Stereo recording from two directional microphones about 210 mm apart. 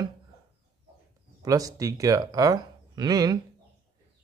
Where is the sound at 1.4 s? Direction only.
15° right (ahead or behind).